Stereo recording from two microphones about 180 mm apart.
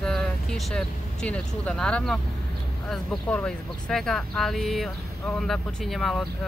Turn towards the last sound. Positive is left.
turn(degrees=0)  # may be behind; listen again after turning